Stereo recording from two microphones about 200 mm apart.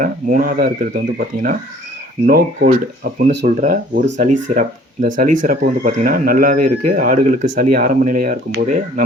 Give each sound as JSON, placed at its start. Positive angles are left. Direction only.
{"t": 0.0, "sound": "speech", "side_deg": -40}
{"t": 2.6, "sound": "speech", "side_deg": -45}